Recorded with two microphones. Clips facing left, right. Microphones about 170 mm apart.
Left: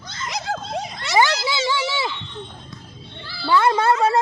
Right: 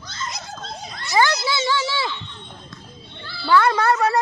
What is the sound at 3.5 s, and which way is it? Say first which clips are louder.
Speech: even; 20° left (ahead or behind).